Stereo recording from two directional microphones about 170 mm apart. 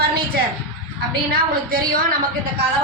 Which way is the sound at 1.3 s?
60° right (ahead or behind).